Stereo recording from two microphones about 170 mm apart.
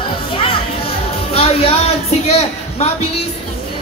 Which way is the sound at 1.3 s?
35° left (ahead or behind).